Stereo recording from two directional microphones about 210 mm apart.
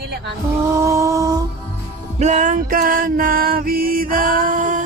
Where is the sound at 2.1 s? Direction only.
35° right (ahead or behind).